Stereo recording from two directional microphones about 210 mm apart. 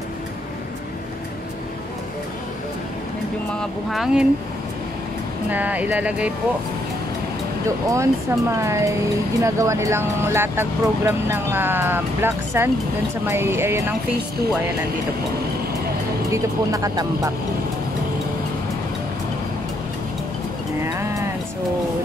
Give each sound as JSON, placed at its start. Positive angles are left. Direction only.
{"t": 3.9, "sound": "speech", "side_deg": -5}
{"t": 5.5, "sound": "speech", "side_deg": -10}
{"t": 7.9, "sound": "speech", "side_deg": -15}
{"t": 16.3, "sound": "speech", "side_deg": -15}